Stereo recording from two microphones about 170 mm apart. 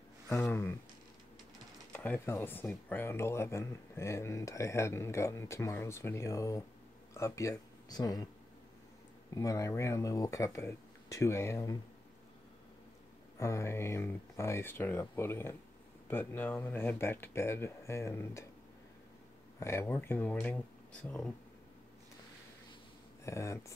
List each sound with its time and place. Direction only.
0.3 s speech: 10° left (ahead or behind)
1.9 s speech: 10° left (ahead or behind)
9.3 s speech: 20° left (ahead or behind)
13.4 s speech: 15° left (ahead or behind)
19.6 s speech: 15° left (ahead or behind)
23.2 s speech: 15° left (ahead or behind)